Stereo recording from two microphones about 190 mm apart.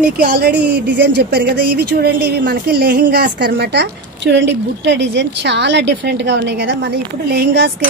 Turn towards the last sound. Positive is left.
turn(degrees=-60)  # may be behind; listen again after turning